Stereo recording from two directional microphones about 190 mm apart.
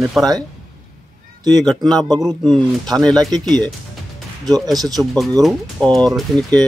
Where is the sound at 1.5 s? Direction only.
Centre (ahead or behind).